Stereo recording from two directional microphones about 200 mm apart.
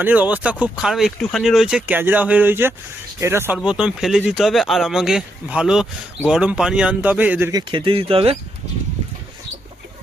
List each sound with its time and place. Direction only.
0.0 s speech: 10° right (ahead or behind)
7.7 s speech: 25° right (ahead or behind)